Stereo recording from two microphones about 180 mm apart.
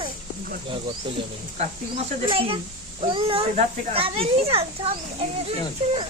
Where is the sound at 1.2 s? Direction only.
30° right (ahead or behind).